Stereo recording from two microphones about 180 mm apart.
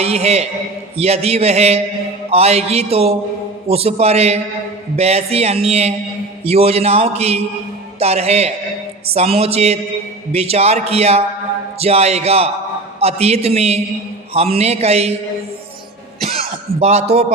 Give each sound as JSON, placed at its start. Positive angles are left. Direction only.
{"t": 0.0, "sound": "a man's voice", "side_deg": -35}
{"t": 16.2, "sound": "throat clearing", "side_deg": -35}